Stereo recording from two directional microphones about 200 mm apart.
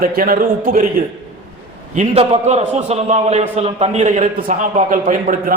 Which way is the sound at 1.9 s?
30° right (ahead or behind).